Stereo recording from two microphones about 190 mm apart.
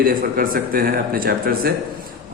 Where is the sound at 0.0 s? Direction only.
50° right (ahead or behind).